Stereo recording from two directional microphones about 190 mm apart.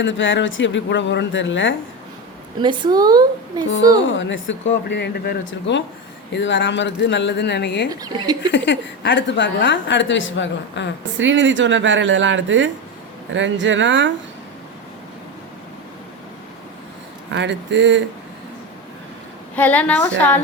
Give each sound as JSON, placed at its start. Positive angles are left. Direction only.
{"t": 0.0, "sound": "speech", "side_deg": 85}
{"t": 2.6, "sound": "a woman's voice", "side_deg": -25}
{"t": 4.1, "sound": "a woman's voice", "side_deg": 80}
{"t": 7.9, "sound": "a woman's voice", "side_deg": -20}
{"t": 8.5, "sound": "a woman's voice", "side_deg": 75}
{"t": 11.2, "sound": "speech", "side_deg": -75}
{"t": 17.3, "sound": "speech", "side_deg": -70}
{"t": 19.5, "sound": "a woman's voice", "side_deg": 10}